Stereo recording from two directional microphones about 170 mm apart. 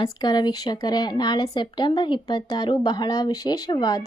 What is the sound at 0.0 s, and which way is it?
A woman's voice, 25° left (ahead or behind).